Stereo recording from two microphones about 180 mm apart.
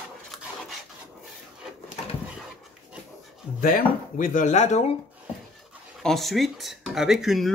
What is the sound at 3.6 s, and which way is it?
Speech, 50° left (ahead or behind).